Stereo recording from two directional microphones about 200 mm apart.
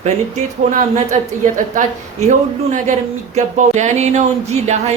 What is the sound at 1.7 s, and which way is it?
Speech, 40° right (ahead or behind).